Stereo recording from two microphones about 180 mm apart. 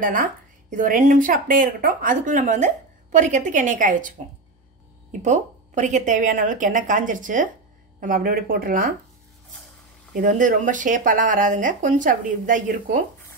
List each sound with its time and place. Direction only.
0.0 s speech: 50° right (ahead or behind)
5.2 s speech: 40° right (ahead or behind)
10.1 s speech: 50° right (ahead or behind)